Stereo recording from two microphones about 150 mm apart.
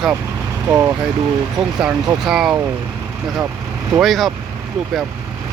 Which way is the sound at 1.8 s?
5° right (ahead or behind).